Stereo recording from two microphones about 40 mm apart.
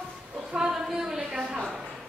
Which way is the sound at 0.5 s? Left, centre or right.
Centre.